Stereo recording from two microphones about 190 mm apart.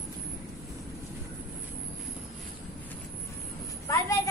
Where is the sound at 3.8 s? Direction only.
15° left (ahead or behind).